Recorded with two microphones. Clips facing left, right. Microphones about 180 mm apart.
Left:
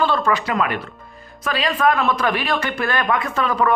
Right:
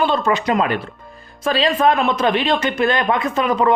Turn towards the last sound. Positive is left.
turn(degrees=-20)  # may be behind; listen again after turning